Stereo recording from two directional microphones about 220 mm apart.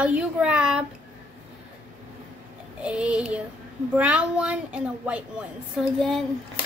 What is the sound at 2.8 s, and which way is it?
A woman's voice, 5° right (ahead or behind).